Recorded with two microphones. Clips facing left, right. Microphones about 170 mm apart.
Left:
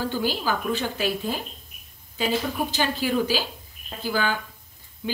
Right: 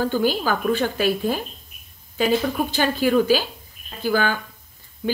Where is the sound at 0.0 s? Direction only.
50° right (ahead or behind).